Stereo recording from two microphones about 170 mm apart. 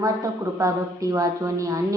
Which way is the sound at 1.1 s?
20° right (ahead or behind).